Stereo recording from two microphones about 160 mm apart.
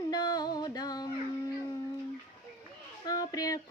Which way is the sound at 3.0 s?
25° left (ahead or behind).